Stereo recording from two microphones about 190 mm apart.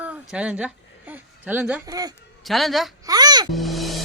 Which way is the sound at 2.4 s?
Centre (ahead or behind).